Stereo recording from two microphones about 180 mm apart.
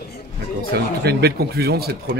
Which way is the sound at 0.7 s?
60° right (ahead or behind).